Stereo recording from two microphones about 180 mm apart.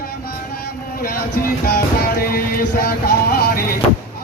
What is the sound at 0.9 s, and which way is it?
Speech, 55° left (ahead or behind).